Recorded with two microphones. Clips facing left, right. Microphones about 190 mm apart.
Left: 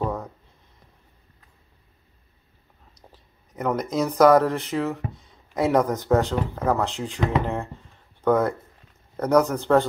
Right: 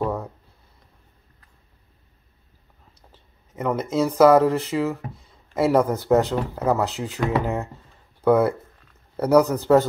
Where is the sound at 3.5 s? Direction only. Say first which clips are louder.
Right 1 dB; 5° right (ahead or behind).